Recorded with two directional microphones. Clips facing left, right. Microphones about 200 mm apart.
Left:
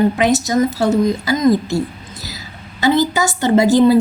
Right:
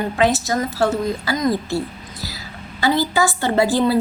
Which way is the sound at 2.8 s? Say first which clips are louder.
Left 3 dB; 20° left (ahead or behind).